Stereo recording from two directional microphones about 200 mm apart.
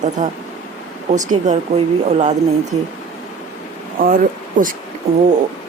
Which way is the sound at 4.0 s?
45° right (ahead or behind).